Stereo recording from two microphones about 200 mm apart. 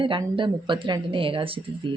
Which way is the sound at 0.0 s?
25° right (ahead or behind).